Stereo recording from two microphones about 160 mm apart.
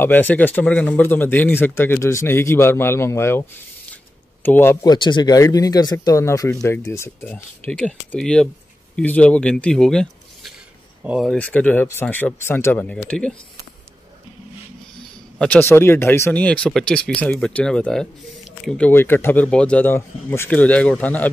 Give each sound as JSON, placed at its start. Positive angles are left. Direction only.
{"t": 0.0, "sound": "speech", "side_deg": 10}
{"t": 4.8, "sound": "speech", "side_deg": 30}
{"t": 11.3, "sound": "speech", "side_deg": 10}
{"t": 15.3, "sound": "speech", "side_deg": 10}